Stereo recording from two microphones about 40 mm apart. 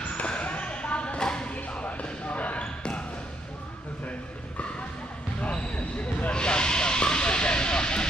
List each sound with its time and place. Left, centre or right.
0.2 s basketball bounce: left
1.5 s basketball bounce: left
2.6 s basketball bounce: left
5.4 s basketball bounce: left
6.3 s hiss: left